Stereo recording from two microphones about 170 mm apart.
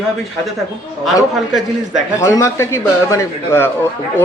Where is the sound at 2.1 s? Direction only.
15° left (ahead or behind).